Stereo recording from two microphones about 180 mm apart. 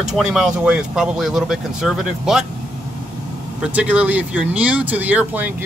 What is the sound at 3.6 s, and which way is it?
Speech, 10° right (ahead or behind).